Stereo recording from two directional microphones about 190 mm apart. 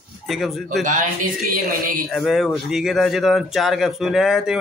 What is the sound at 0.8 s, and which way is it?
Speech, 40° right (ahead or behind).